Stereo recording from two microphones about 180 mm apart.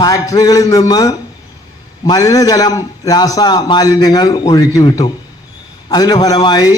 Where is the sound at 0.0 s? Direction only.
20° left (ahead or behind).